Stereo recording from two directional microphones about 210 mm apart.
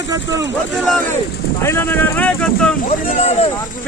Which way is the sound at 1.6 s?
10° left (ahead or behind).